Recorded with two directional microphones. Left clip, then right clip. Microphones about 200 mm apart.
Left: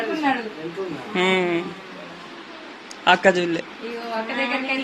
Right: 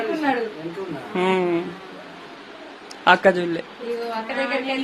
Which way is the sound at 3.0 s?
25° right (ahead or behind).